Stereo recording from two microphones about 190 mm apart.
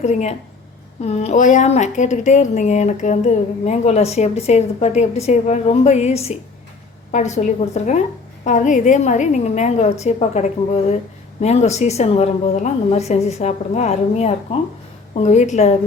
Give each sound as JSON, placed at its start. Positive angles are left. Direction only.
{"t": 0.0, "sound": "a woman's voice", "side_deg": 35}